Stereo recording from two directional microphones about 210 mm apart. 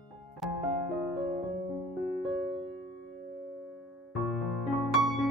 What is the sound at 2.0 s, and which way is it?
Music, centre (ahead or behind).